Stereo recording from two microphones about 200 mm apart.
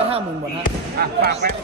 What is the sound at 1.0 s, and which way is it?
Speech, 50° right (ahead or behind).